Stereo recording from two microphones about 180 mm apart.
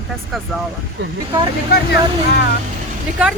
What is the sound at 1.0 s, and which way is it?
Speech, 70° right (ahead or behind).